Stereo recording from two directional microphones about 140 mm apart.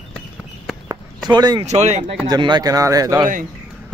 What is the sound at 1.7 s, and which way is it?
Speech, 55° right (ahead or behind).